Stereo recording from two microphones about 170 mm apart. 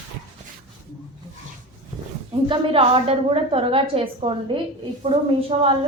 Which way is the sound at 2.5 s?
30° right (ahead or behind).